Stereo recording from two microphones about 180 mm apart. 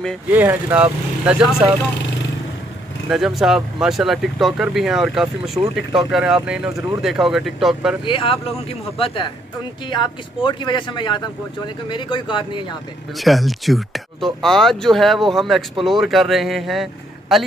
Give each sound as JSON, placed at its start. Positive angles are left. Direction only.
{"t": 0.3, "sound": "speech", "side_deg": -10}
{"t": 3.1, "sound": "speech", "side_deg": 0}
{"t": 8.0, "sound": "speech", "side_deg": 30}
{"t": 13.2, "sound": "speech", "side_deg": 0}